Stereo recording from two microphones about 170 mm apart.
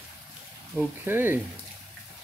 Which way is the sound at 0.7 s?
10° right (ahead or behind).